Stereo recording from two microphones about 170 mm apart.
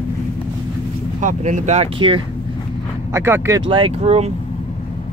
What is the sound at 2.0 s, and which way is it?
Speech, 30° right (ahead or behind).